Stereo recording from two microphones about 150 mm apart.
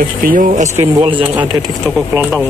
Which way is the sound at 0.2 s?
65° right (ahead or behind).